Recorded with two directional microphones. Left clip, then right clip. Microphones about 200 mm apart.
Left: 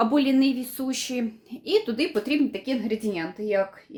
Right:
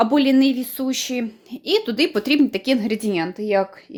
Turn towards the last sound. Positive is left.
turn(degrees=-45)  # may be behind; listen again after turning